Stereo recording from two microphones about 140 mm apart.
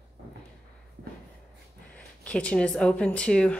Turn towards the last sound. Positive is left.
turn(degrees=5)  # may be behind; listen again after turning